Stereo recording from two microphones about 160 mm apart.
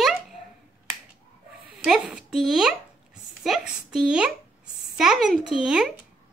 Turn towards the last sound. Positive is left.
turn(degrees=-5)  # may be behind; listen again after turning